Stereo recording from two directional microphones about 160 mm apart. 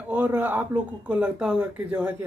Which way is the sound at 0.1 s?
10° right (ahead or behind).